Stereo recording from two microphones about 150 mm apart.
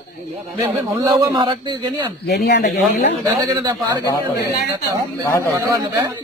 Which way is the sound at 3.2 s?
25° right (ahead or behind).